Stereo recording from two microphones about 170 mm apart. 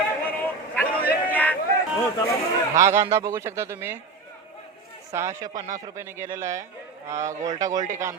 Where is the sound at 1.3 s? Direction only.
10° left (ahead or behind).